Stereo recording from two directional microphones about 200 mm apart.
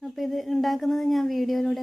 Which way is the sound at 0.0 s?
Centre (ahead or behind).